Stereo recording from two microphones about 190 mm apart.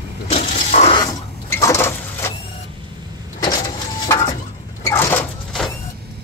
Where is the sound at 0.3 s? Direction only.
40° left (ahead or behind).